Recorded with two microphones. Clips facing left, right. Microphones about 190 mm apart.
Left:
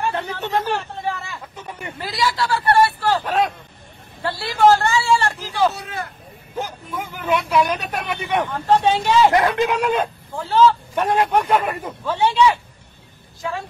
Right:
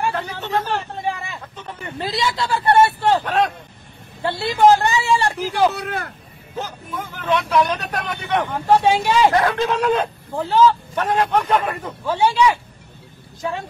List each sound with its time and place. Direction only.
0.1 s speech: 20° left (ahead or behind)
0.7 s vehicle: 15° right (ahead or behind)
1.6 s speech: 10° left (ahead or behind)
2.0 s speech: 25° right (ahead or behind)
3.3 s speech: centre (ahead or behind)
4.2 s a woman's voice: 25° right (ahead or behind)
5.7 s speech: 65° right (ahead or behind)
6.5 s speech: 10° left (ahead or behind)
8.5 s a woman's voice: 10° right (ahead or behind)
9.3 s speech: 15° left (ahead or behind)
10.3 s a woman's voice: 15° right (ahead or behind)
11.0 s speech: 10° left (ahead or behind)
12.0 s a woman's voice: 10° right (ahead or behind)